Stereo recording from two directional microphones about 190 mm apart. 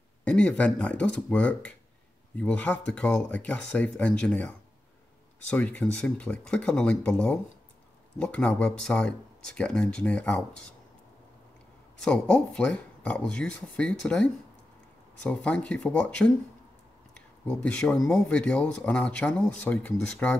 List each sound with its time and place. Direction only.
0.2 s speech: 5° left (ahead or behind)
12.0 s speech: 5° left (ahead or behind)
17.5 s speech: 5° left (ahead or behind)